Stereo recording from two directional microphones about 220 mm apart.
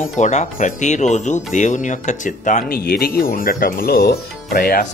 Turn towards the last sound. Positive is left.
turn(degrees=40)  # may be behind; listen again after turning